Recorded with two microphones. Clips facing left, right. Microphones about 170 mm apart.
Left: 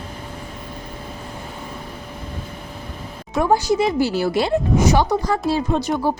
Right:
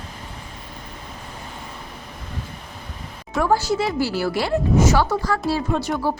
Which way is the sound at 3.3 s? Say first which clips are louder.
Left 2 dB; 20° left (ahead or behind).